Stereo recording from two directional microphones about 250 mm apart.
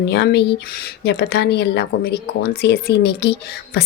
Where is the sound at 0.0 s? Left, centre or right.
Left.